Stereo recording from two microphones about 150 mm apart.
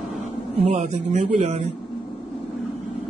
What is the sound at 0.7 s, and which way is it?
Speech, 50° right (ahead or behind).